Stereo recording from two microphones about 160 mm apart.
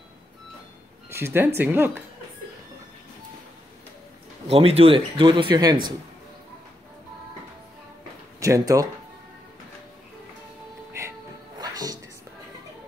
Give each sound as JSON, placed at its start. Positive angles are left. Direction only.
{"t": 1.1, "sound": "speech", "side_deg": -15}
{"t": 4.5, "sound": "speech", "side_deg": -40}
{"t": 8.4, "sound": "speech", "side_deg": -20}
{"t": 10.9, "sound": "music", "side_deg": -15}